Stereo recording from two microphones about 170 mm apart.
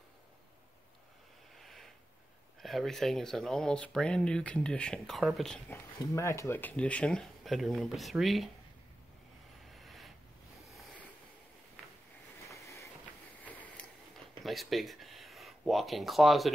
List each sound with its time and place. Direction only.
1.6 s a sound: centre (ahead or behind)
2.6 s speech: centre (ahead or behind)
5.7 s speech: 15° left (ahead or behind); by 8.5 s centre (ahead or behind)
9.7 s vehicle: centre (ahead or behind)
12.4 s vehicle: 15° left (ahead or behind)
13.4 s a sound: 10° left (ahead or behind)
14.4 s speech: centre (ahead or behind)